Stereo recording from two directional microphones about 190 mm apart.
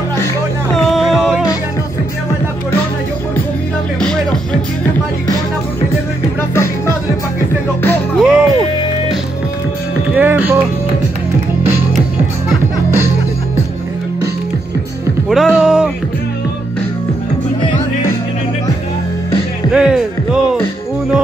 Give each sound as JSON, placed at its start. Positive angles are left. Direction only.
{"t": 0.9, "sound": "music", "side_deg": 0}
{"t": 4.0, "sound": "music", "side_deg": 5}
{"t": 8.2, "sound": "music", "side_deg": -5}
{"t": 10.1, "sound": "music", "side_deg": -10}
{"t": 15.2, "sound": "music", "side_deg": 0}
{"t": 19.7, "sound": "music", "side_deg": -5}